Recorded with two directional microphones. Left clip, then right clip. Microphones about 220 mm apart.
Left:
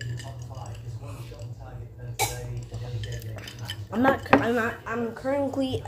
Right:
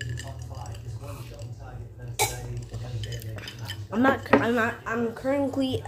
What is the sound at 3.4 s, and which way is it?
Speech, 15° right (ahead or behind).